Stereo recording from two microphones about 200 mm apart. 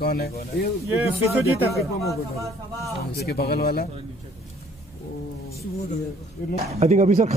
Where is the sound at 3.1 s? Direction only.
50° left (ahead or behind).